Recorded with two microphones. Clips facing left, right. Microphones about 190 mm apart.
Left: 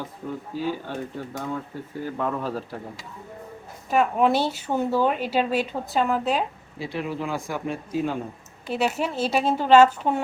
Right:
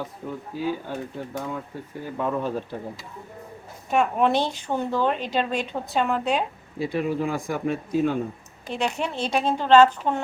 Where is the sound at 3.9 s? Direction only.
Centre (ahead or behind).